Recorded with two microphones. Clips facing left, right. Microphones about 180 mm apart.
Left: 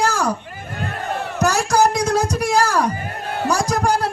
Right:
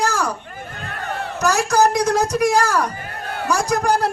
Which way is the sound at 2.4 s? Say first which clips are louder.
Even; 30° left (ahead or behind).